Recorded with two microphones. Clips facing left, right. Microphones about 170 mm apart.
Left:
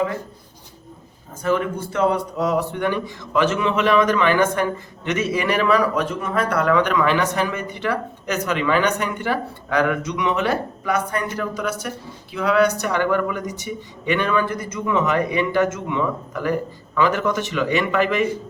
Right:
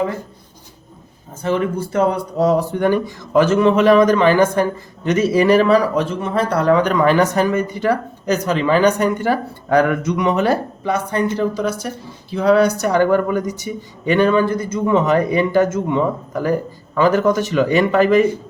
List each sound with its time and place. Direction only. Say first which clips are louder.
1.4 s a man's voice: right 2 dB; 30° right (ahead or behind)